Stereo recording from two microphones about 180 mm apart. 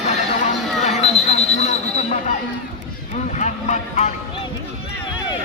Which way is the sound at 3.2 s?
40° left (ahead or behind).